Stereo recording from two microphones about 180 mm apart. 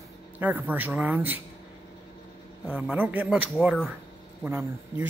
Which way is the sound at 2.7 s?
10° right (ahead or behind).